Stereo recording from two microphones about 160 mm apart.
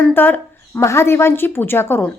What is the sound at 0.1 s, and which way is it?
A woman's voice, 10° left (ahead or behind).